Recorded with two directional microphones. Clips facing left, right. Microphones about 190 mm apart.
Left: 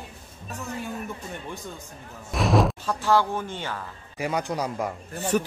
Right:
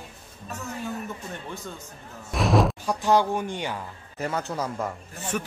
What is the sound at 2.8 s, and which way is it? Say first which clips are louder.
Speech: right 1 dB; 15° right (ahead or behind).